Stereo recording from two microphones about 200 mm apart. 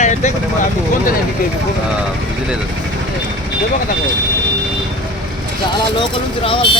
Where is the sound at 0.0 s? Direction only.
35° left (ahead or behind).